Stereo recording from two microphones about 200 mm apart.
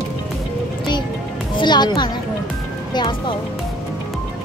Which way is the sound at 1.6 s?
20° left (ahead or behind).